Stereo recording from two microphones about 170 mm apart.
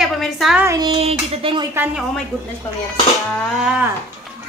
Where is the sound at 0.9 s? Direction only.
35° right (ahead or behind).